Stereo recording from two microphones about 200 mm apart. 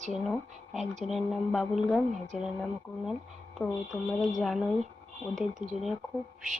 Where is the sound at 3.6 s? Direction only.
Centre (ahead or behind).